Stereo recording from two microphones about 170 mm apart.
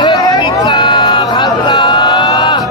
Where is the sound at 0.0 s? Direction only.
25° left (ahead or behind).